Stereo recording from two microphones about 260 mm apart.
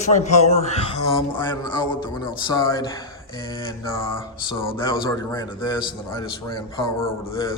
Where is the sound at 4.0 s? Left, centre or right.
Centre.